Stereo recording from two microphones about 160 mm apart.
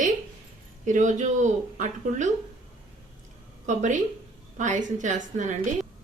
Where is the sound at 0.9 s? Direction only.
50° right (ahead or behind).